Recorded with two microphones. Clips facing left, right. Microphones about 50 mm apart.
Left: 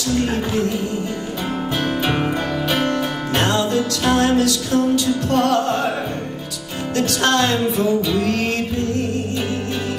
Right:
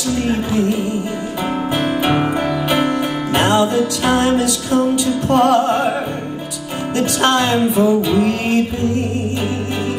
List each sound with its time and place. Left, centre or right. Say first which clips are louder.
1.8 s music: right 4 dB; centre
7.0 s music: right 2 dB; right